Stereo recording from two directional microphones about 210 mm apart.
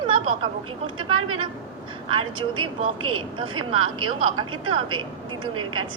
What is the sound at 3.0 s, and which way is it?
Speech, 90° right.